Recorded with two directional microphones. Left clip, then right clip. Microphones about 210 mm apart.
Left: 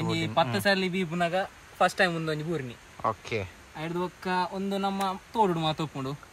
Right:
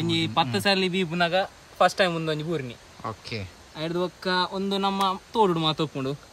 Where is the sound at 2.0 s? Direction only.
25° right (ahead or behind).